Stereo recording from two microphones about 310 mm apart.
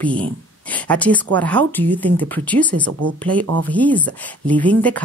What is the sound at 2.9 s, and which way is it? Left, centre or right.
Speech, right.